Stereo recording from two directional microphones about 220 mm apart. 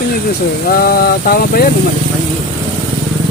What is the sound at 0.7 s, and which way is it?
Speech, 40° left (ahead or behind).